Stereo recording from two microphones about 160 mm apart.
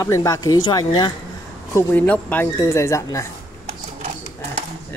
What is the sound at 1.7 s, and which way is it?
Speech, 10° left (ahead or behind).